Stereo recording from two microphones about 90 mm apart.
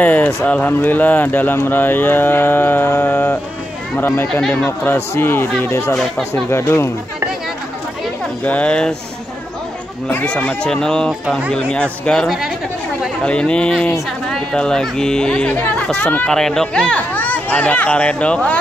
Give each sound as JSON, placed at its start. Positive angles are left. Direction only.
{"t": 0.0, "sound": "speech", "side_deg": 15}
{"t": 4.3, "sound": "speech", "side_deg": 5}
{"t": 4.6, "sound": "speech", "side_deg": 30}
{"t": 5.9, "sound": "speech", "side_deg": 5}
{"t": 6.5, "sound": "speech", "side_deg": 30}
{"t": 8.5, "sound": "speech", "side_deg": 15}
{"t": 10.0, "sound": "speech", "side_deg": 10}
{"t": 12.3, "sound": "speech", "side_deg": -5}
{"t": 13.2, "sound": "speech", "side_deg": 10}